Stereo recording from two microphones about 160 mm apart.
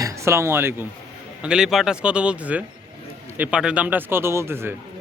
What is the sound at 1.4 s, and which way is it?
Speech, 5° right (ahead or behind).